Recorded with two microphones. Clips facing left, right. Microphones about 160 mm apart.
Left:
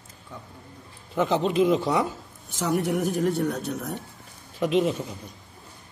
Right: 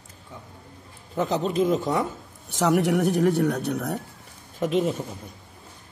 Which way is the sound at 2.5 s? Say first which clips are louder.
Right 4 dB; 75° right (ahead or behind).